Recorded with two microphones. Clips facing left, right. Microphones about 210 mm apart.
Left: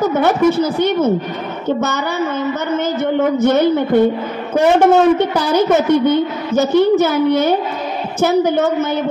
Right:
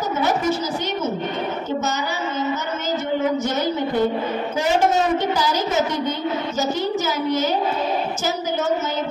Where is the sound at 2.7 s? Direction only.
55° left (ahead or behind).